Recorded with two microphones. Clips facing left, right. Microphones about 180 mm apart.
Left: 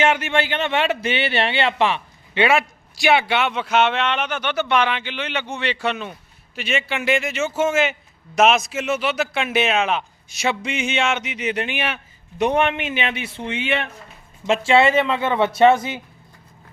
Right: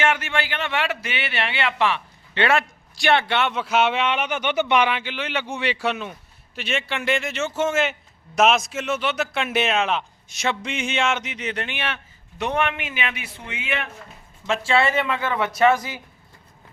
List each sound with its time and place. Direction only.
0.0 s speech: 20° left (ahead or behind); by 4.9 s 15° right (ahead or behind)
4.9 s a man's voice: 5° right (ahead or behind); by 16.0 s 25° left (ahead or behind)